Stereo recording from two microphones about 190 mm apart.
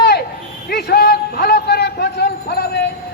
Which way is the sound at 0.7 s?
60° left (ahead or behind).